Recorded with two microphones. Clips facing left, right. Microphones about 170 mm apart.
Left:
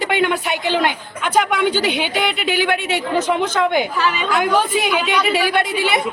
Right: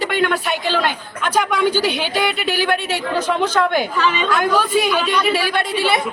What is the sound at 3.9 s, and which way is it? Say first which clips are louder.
A woman's voice: right 1 dB; 10° left (ahead or behind).